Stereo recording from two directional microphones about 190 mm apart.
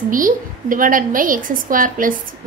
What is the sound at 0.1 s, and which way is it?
A woman's voice, 45° right (ahead or behind).